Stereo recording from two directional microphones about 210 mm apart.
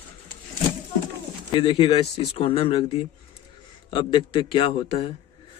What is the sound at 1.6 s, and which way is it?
Speech, 20° left (ahead or behind).